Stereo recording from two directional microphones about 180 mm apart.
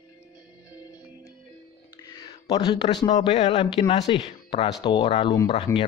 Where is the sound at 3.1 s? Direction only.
40° left (ahead or behind).